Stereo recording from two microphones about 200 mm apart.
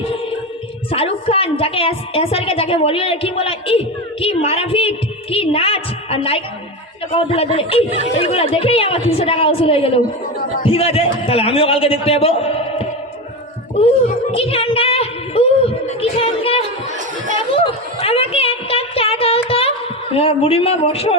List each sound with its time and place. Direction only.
0.9 s a woman's voice: 30° left (ahead or behind)
17.5 s a sound: 30° left (ahead or behind)
20.1 s a woman's voice: 30° left (ahead or behind)